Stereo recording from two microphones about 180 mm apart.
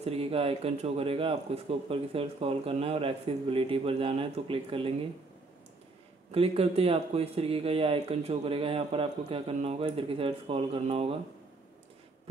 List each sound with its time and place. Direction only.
0.0 s speech: 35° right (ahead or behind)
6.3 s speech: 30° right (ahead or behind)